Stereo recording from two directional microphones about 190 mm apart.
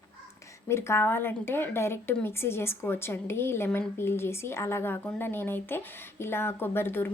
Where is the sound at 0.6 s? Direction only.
15° left (ahead or behind).